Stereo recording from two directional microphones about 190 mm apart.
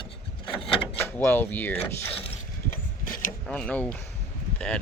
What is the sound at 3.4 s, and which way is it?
Speech, 5° left (ahead or behind).